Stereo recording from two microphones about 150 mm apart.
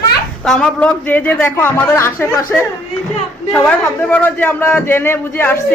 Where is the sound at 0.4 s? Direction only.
5° left (ahead or behind).